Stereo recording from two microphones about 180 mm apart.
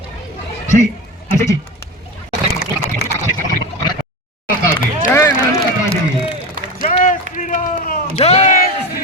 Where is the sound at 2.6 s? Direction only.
70° left (ahead or behind).